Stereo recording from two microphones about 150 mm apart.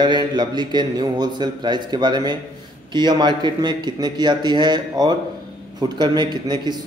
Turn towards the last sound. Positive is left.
turn(degrees=-30)  # may be behind; listen again after turning